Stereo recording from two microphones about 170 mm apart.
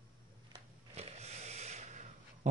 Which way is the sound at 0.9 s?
40° right (ahead or behind).